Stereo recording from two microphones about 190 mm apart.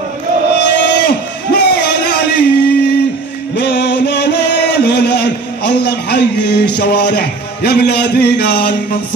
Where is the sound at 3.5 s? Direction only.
65° left (ahead or behind).